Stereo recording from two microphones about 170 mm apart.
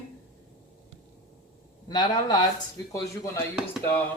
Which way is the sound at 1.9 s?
25° left (ahead or behind).